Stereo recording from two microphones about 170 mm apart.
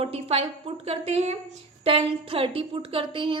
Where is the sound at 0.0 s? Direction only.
35° right (ahead or behind).